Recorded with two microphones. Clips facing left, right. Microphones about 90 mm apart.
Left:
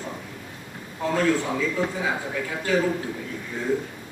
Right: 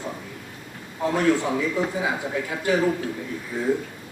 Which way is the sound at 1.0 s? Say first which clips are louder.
Right 2 dB; 20° right (ahead or behind).